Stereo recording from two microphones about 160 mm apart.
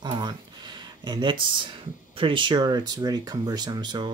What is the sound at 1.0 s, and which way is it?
Speech, 30° right (ahead or behind).